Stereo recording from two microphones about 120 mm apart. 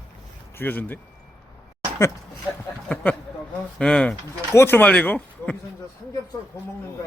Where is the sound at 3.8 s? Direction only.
5° left (ahead or behind).